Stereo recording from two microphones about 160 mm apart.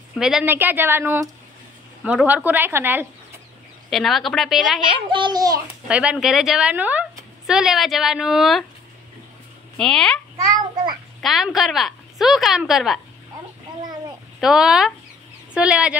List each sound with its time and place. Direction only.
0.2 s speech: 5° right (ahead or behind)
3.9 s a woman's voice: centre (ahead or behind)
5.1 s a child's voice: 25° right (ahead or behind)
5.9 s a woman's voice: 5° right (ahead or behind)
9.8 s a woman's voice: 5° left (ahead or behind)
14.4 s a woman's voice: 5° right (ahead or behind)